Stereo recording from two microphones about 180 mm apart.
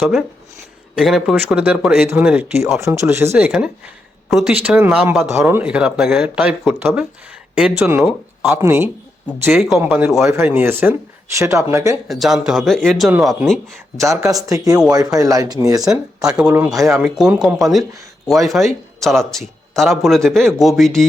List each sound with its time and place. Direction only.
0.0 s speech: centre (ahead or behind)
2.8 s speech: 15° right (ahead or behind)
9.5 s speech: centre (ahead or behind); by 11.9 s 15° right (ahead or behind)
12.0 s speech: centre (ahead or behind)
14.1 s speech: 15° right (ahead or behind)
15.8 s speech: 5° right (ahead or behind)
16.7 s speech: 20° right (ahead or behind)
17.0 s speech: 5° right (ahead or behind)